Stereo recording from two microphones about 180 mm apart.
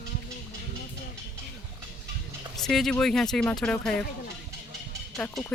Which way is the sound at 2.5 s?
Centre (ahead or behind).